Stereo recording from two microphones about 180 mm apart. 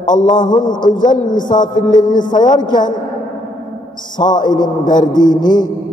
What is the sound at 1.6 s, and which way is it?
A man's voice, 25° left (ahead or behind).